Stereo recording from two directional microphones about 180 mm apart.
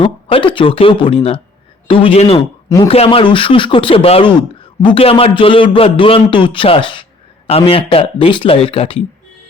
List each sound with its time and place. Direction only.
0.0 s speech: 30° left (ahead or behind)
2.6 s speech: 20° left (ahead or behind)
2.9 s speech: 35° left (ahead or behind)